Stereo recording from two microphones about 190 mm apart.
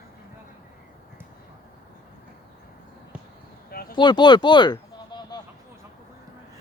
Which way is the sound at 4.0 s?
25° left (ahead or behind).